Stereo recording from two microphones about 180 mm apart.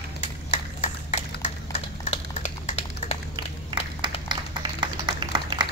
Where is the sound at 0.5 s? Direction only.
40° left (ahead or behind).